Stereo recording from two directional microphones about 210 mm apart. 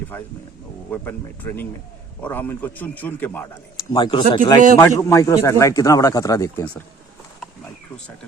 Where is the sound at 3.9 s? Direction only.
20° left (ahead or behind).